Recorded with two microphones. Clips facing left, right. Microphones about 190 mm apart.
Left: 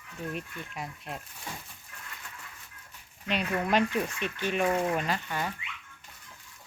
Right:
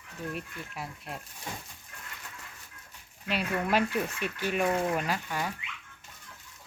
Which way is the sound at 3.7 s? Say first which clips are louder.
Left 1 dB; 5° right (ahead or behind).